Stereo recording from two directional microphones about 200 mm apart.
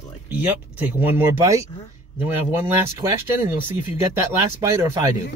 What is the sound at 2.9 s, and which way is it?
Speech, 15° right (ahead or behind).